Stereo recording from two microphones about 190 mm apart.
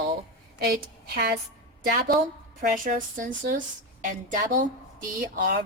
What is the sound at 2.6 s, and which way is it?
Speech, 45° right (ahead or behind).